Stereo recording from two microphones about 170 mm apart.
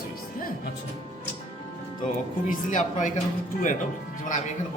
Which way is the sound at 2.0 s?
50° left (ahead or behind).